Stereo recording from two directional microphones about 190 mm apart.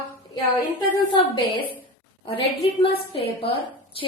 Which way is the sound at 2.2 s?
30° left (ahead or behind).